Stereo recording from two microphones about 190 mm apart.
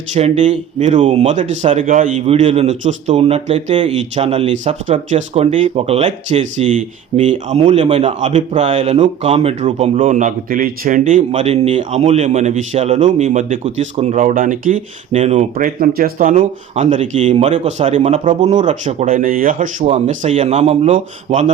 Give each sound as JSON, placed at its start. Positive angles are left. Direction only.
{"t": 0.1, "sound": "a man's voice", "side_deg": -40}